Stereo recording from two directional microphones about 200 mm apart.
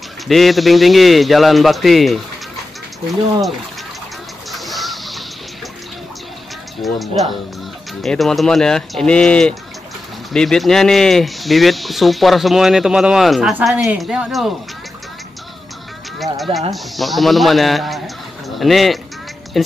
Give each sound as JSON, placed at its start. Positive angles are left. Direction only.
{"t": 0.3, "sound": "speech", "side_deg": 0}
{"t": 4.5, "sound": "music", "side_deg": 0}
{"t": 6.8, "sound": "speech", "side_deg": 0}
{"t": 16.7, "sound": "speech", "side_deg": 0}